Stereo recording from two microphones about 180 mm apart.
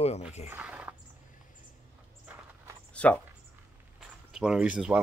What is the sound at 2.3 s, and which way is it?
Walk, 10° right (ahead or behind).